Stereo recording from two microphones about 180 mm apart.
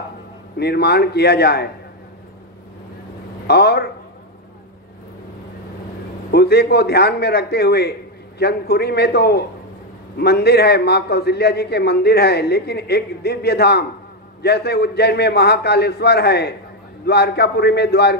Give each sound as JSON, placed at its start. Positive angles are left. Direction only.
{"t": 0.6, "sound": "a man's voice", "side_deg": 65}
{"t": 3.4, "sound": "a man's voice", "side_deg": 65}
{"t": 6.3, "sound": "a man's voice", "side_deg": 60}